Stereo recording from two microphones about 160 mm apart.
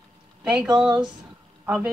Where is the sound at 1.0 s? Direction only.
5° right (ahead or behind).